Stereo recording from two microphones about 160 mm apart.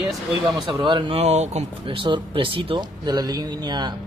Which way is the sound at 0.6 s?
25° right (ahead or behind).